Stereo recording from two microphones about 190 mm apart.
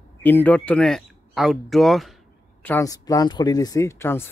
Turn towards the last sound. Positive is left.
turn(degrees=15)  # may be behind; listen again after turning